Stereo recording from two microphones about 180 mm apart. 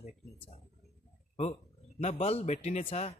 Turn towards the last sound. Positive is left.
turn(degrees=35)  # may be behind; listen again after turning